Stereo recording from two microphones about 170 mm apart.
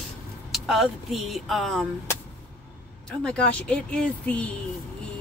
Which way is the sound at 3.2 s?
5° left (ahead or behind).